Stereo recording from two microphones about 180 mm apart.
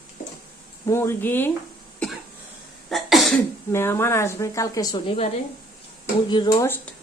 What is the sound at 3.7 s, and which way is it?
A woman's voice, 15° left (ahead or behind).